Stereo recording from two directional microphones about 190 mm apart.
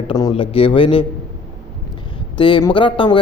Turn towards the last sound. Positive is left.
turn(degrees=25)  # may be behind; listen again after turning